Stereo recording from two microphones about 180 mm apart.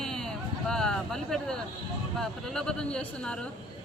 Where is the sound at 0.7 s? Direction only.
5° left (ahead or behind).